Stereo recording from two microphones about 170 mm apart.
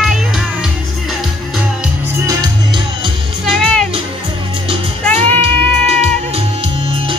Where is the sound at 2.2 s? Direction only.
25° right (ahead or behind).